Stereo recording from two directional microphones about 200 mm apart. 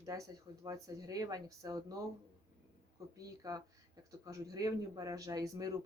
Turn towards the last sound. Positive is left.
turn(degrees=-20)  # may be behind; listen again after turning